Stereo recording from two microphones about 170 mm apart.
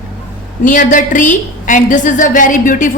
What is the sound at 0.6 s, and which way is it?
A woman's voice, 50° left (ahead or behind).